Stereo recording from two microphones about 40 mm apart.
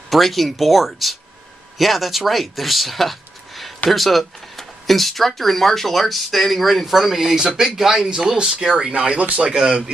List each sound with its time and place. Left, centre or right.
0.1 s speech: centre
8.9 s speech: right